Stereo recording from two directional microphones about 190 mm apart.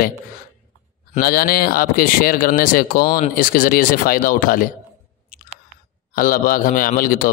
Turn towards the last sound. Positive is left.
turn(degrees=50)  # may be behind; listen again after turning